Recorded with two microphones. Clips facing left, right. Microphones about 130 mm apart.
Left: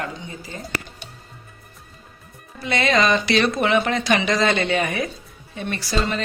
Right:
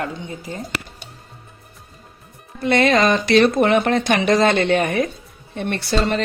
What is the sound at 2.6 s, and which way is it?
A woman's voice, 50° right (ahead or behind).